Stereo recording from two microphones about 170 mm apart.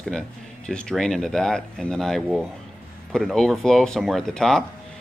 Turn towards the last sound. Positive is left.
turn(degrees=5)  # may be behind; listen again after turning